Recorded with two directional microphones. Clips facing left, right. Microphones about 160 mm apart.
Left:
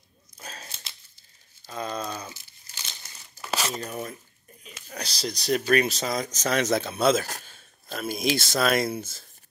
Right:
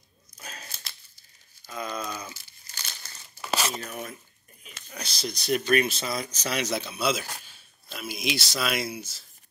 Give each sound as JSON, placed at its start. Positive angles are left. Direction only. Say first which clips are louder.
{"t": 0.4, "sound": "a sound", "louder": "left 1 dB", "side_deg": 30}
{"t": 1.7, "sound": "crumpling", "louder": "left 2 dB", "side_deg": 30}
{"t": 3.7, "sound": "speech", "louder": "left 3 dB", "side_deg": 35}